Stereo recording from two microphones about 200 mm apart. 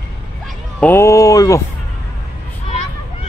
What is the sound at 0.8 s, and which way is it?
Speech, 15° left (ahead or behind).